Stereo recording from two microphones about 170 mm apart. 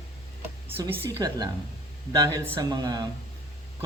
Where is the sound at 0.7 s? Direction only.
15° right (ahead or behind).